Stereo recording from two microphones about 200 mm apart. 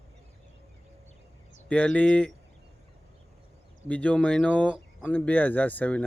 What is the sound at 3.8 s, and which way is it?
Speech, 5° left (ahead or behind).